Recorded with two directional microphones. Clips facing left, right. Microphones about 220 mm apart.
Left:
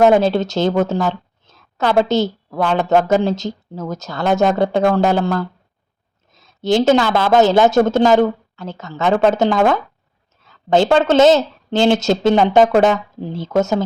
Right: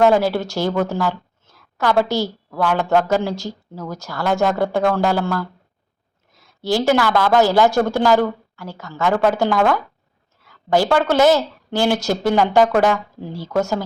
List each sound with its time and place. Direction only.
0.0 s speech: 20° left (ahead or behind)